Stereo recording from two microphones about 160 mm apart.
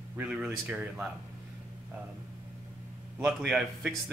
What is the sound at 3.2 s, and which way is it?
Speech, 5° right (ahead or behind).